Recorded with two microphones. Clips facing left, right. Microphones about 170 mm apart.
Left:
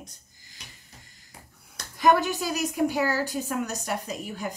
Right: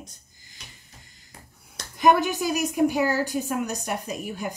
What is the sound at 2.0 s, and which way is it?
A woman's voice, 15° right (ahead or behind).